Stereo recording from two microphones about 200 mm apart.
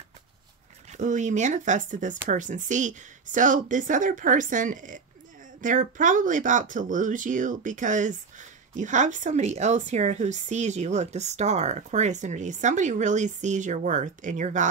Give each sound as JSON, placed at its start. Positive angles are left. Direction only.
{"t": 0.9, "sound": "speech", "side_deg": -40}